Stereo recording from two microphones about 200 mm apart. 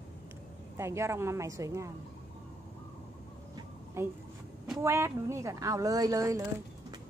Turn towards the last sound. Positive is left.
turn(degrees=-15)  # may be behind; listen again after turning